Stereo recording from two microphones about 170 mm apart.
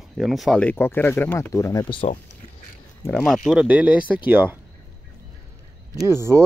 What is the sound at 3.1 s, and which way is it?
Speech, centre (ahead or behind).